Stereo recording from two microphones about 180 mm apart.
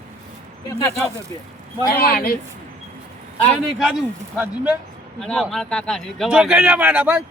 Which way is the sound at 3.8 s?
5° right (ahead or behind).